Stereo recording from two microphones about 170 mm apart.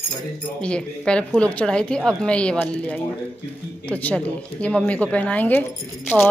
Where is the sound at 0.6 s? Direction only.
5° left (ahead or behind).